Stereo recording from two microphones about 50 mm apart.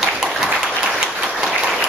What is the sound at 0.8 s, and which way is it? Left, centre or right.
Applause, centre.